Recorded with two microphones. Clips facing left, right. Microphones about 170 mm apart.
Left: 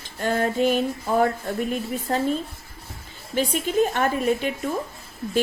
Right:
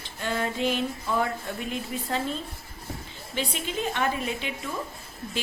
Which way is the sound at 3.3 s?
45° left (ahead or behind).